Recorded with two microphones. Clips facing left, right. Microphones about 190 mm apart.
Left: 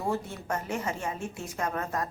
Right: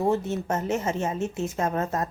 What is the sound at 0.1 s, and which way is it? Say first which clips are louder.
A woman's voice: right 6 dB; 25° right (ahead or behind).